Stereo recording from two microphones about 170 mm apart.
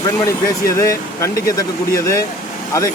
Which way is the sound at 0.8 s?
15° left (ahead or behind).